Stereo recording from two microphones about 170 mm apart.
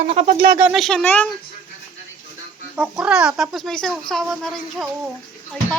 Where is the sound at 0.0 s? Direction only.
40° right (ahead or behind).